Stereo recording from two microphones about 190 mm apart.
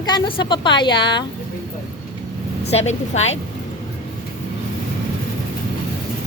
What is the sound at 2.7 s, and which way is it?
Speech, 35° left (ahead or behind).